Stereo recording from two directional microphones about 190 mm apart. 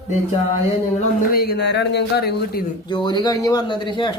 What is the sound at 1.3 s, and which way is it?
Speech, 55° left (ahead or behind).